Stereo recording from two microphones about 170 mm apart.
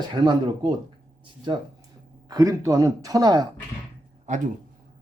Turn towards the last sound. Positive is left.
turn(degrees=-45)  # may be behind; listen again after turning